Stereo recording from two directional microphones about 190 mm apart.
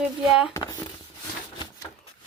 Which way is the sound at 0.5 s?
15° left (ahead or behind).